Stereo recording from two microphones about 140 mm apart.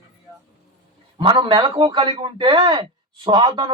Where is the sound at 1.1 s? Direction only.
35° right (ahead or behind).